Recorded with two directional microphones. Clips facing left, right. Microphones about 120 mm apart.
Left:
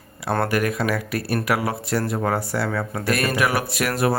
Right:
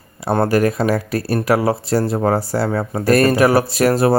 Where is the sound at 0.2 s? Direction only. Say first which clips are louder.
Right 6 dB; 30° right (ahead or behind).